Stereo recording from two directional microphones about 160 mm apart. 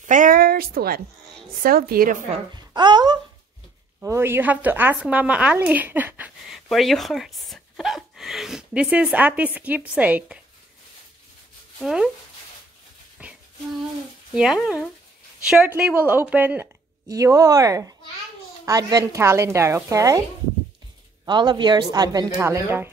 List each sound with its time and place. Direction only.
0.0 s a sound: 55° right (ahead or behind); by 1.0 s 70° right (ahead or behind)
1.6 s a woman's voice: 70° right (ahead or behind)
2.3 s speech: 30° right (ahead or behind)
4.0 s a woman's voice: 15° right (ahead or behind)
11.8 s speech: 5° right (ahead or behind)
13.2 s a sound: 10° right (ahead or behind)
14.3 s a woman's voice: 5° right (ahead or behind)
17.1 s speech: 20° right (ahead or behind)
21.3 s speech: 30° right (ahead or behind)